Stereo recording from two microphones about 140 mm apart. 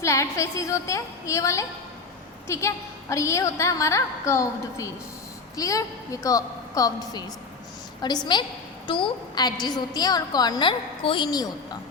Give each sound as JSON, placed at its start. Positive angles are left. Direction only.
{"t": 0.0, "sound": "a woman's voice", "side_deg": 20}